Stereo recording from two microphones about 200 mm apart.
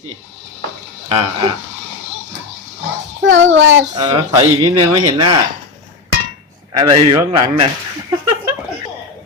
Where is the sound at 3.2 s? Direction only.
65° right (ahead or behind).